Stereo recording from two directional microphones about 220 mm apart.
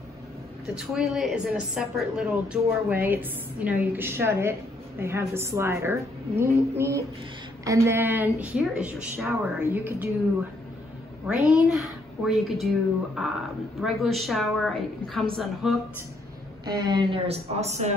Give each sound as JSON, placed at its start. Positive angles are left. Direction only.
{"t": 0.7, "sound": "a woman's voice", "side_deg": 0}
{"t": 11.2, "sound": "speech", "side_deg": -5}
{"t": 16.6, "sound": "speech", "side_deg": -20}